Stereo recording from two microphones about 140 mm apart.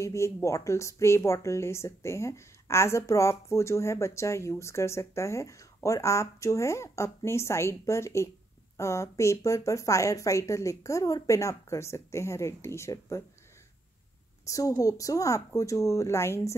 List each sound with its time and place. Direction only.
0.0 s speech: 20° left (ahead or behind)
14.5 s speech: 25° left (ahead or behind)